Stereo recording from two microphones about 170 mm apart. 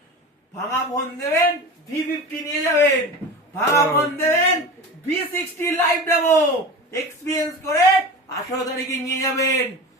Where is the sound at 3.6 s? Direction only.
15° left (ahead or behind).